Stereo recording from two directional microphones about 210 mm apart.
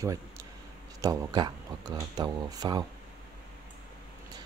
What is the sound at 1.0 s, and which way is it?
Speech, 15° right (ahead or behind).